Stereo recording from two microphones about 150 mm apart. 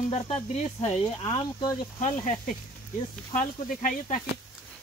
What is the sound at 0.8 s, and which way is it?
Speech, 25° left (ahead or behind).